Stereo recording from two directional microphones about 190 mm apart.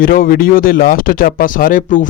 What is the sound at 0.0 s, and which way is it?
Speech, 50° left (ahead or behind).